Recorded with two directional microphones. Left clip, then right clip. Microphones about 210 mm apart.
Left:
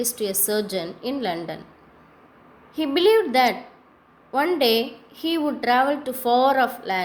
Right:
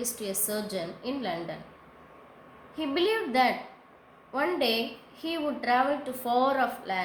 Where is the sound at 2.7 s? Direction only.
40° left (ahead or behind).